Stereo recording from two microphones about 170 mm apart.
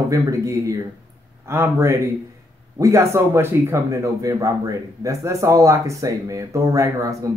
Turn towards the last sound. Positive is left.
turn(degrees=-20)  # may be behind; listen again after turning